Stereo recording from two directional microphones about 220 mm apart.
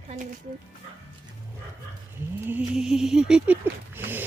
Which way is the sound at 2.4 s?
5° right (ahead or behind).